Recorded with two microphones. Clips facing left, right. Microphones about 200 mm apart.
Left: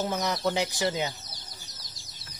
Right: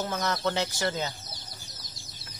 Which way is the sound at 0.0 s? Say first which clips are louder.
Left 1 dB; 20° left (ahead or behind).